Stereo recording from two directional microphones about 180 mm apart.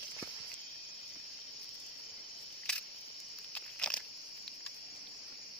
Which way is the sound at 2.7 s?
5° left (ahead or behind).